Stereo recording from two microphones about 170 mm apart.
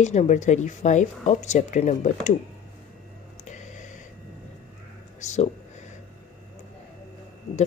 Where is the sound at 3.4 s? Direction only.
45° left (ahead or behind).